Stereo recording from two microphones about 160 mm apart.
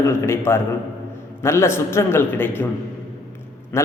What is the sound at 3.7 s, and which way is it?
Speech, 15° left (ahead or behind).